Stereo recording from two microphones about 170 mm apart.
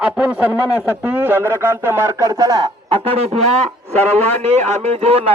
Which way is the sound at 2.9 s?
35° right (ahead or behind).